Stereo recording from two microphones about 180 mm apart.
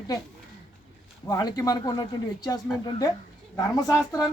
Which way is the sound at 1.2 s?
20° left (ahead or behind).